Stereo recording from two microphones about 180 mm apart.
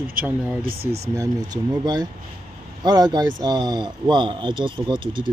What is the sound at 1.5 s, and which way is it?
Speech, 20° right (ahead or behind).